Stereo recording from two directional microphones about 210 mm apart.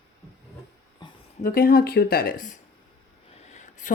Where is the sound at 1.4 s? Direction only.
45° left (ahead or behind).